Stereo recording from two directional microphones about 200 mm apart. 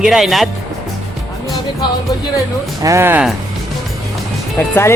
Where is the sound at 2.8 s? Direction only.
10° right (ahead or behind).